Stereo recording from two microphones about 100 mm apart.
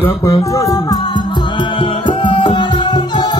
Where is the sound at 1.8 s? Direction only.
55° left (ahead or behind).